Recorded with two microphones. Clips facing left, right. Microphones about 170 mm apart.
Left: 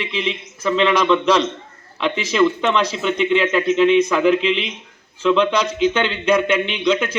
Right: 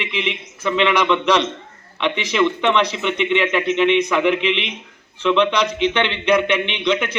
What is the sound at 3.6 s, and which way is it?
Speech, 40° left (ahead or behind).